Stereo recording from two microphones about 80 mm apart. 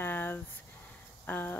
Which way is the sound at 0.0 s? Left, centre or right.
Left.